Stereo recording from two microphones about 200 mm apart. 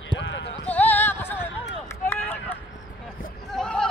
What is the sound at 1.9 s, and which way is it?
Run, 10° left (ahead or behind).